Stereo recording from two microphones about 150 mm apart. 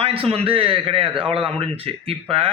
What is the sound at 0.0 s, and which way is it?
A man's voice, 40° right (ahead or behind).